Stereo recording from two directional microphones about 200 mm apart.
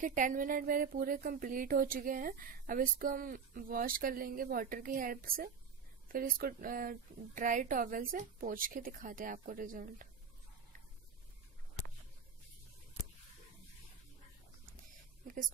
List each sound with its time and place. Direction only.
0.0 s speech: 40° right (ahead or behind)